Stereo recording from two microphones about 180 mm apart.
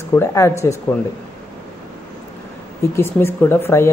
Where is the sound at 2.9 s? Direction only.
15° left (ahead or behind).